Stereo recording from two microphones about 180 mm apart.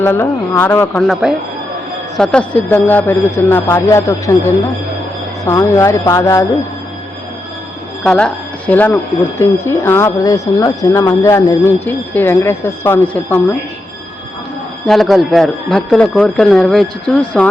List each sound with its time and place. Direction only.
0.0 s speech: 10° left (ahead or behind)
8.0 s speech: 5° left (ahead or behind)
14.8 s speech: centre (ahead or behind)